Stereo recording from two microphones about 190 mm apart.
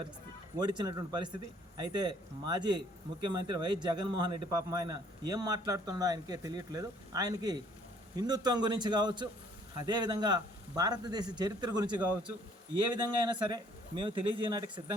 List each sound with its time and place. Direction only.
0.6 s a man's voice: 25° right (ahead or behind)